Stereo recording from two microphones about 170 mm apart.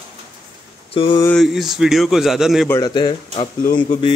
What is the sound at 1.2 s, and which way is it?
Speech, 5° left (ahead or behind).